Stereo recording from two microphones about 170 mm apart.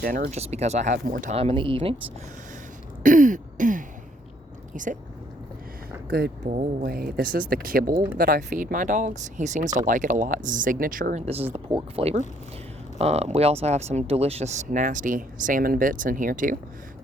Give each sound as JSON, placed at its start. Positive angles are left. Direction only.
{"t": 0.0, "sound": "speech", "side_deg": -60}
{"t": 0.3, "sound": "speech", "side_deg": -40}
{"t": 1.4, "sound": "speech", "side_deg": -35}
{"t": 3.0, "sound": "throat clearing", "side_deg": -50}
{"t": 4.7, "sound": "speech", "side_deg": -50}
{"t": 6.1, "sound": "speech", "side_deg": -70}
{"t": 6.4, "sound": "speech", "side_deg": -45}
{"t": 6.8, "sound": "speech", "side_deg": -60}
{"t": 11.5, "sound": "speech", "side_deg": -35}